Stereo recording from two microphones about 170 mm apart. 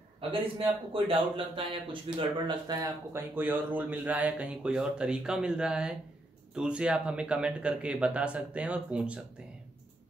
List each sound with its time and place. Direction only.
0.3 s a man's voice: 30° right (ahead or behind); by 9.2 s 5° right (ahead or behind)